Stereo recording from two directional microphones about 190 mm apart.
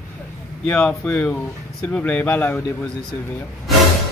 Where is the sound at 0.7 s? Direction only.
5° left (ahead or behind).